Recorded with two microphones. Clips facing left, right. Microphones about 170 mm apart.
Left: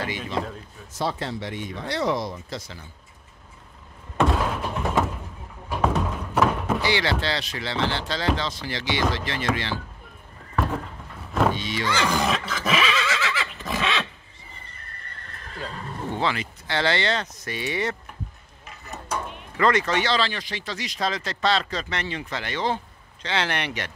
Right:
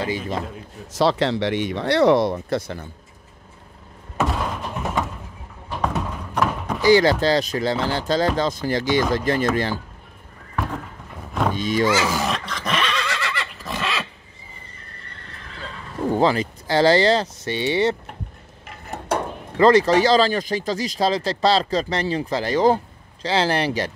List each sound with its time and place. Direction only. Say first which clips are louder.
0.9 s speech: right 9 dB; 85° right; by 2.9 s 55° right (ahead or behind)
4.2 s thunk: left 1 dB; centre (ahead or behind)
5.7 s music: left 1 dB; 5° left (ahead or behind)
6.9 s speech: right 14 dB; 40° right (ahead or behind)
11.5 s cattle: right 8 dB; 45° right (ahead or behind)
11.9 s neigh: right 2 dB; 5° right (ahead or behind)
15.5 s horse: left 2 dB; 40° left (ahead or behind)
16.1 s speech: right 8 dB; 40° right (ahead or behind)
18.7 s a sound: right 7 dB; 60° right (ahead or behind)
19.5 s speech: right 7 dB; 30° right (ahead or behind)